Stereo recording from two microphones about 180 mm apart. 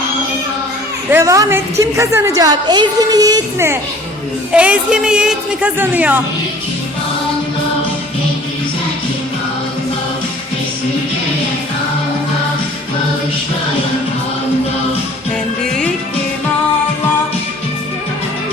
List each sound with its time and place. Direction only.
1.1 s a woman's voice: 20° right (ahead or behind)
4.5 s a woman's voice: 5° right (ahead or behind)